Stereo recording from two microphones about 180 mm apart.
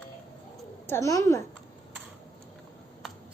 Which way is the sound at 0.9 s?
15° left (ahead or behind).